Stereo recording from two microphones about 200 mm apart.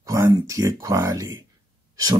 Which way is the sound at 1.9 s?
20° right (ahead or behind).